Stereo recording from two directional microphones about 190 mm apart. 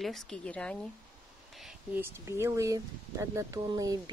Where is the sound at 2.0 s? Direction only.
15° right (ahead or behind).